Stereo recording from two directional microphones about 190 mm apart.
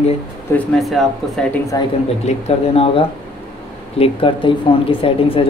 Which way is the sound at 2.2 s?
35° left (ahead or behind).